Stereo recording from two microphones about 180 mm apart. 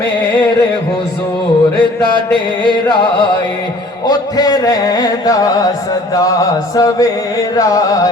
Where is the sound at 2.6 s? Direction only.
25° left (ahead or behind).